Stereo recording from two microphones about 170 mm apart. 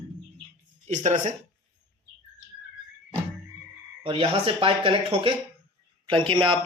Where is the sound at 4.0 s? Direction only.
35° right (ahead or behind).